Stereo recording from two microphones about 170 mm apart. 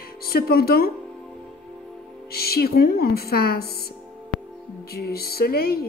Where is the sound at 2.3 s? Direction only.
65° left (ahead or behind).